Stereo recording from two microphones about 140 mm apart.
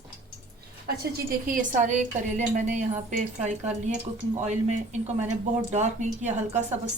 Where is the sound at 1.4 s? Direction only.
65° right (ahead or behind).